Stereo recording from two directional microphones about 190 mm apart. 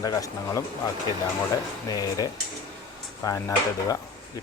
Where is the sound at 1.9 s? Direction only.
20° left (ahead or behind).